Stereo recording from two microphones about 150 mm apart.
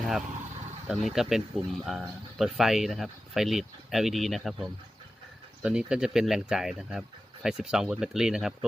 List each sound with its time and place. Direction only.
0.9 s speech: centre (ahead or behind)